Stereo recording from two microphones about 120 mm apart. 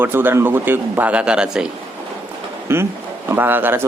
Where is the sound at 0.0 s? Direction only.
15° right (ahead or behind).